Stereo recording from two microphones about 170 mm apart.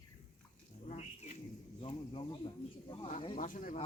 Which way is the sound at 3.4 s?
50° left (ahead or behind).